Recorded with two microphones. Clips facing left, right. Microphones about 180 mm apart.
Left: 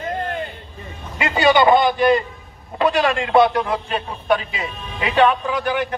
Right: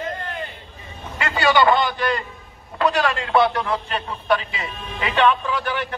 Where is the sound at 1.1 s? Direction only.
15° left (ahead or behind).